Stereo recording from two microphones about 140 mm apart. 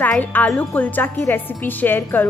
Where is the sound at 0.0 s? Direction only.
10° left (ahead or behind).